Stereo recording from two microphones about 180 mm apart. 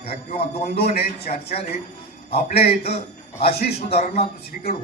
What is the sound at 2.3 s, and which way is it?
Speech, 35° left (ahead or behind).